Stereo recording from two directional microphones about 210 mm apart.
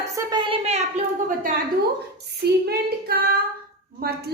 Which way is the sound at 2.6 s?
45° right (ahead or behind).